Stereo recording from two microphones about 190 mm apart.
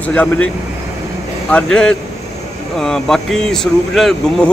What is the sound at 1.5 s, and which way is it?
Speech, 5° left (ahead or behind).